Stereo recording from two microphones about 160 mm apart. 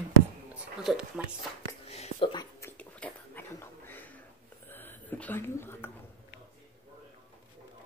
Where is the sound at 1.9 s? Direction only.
35° left (ahead or behind).